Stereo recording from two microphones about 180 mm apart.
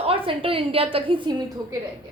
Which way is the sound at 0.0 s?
30° right (ahead or behind).